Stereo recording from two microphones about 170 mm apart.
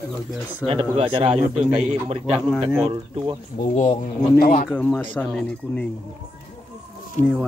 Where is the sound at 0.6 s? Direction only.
10° left (ahead or behind).